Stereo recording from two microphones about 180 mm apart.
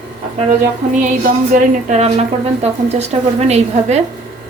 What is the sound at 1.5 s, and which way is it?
A woman's voice, 40° right (ahead or behind).